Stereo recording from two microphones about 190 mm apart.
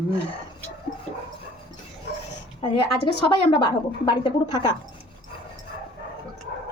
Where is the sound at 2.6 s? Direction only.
25° left (ahead or behind).